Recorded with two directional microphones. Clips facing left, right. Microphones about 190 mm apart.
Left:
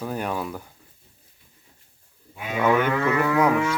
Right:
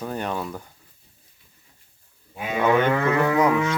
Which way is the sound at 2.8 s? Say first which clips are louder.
Right 2 dB; 25° right (ahead or behind).